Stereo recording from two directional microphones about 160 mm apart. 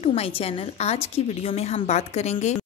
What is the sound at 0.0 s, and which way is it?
A woman's voice, 35° left (ahead or behind).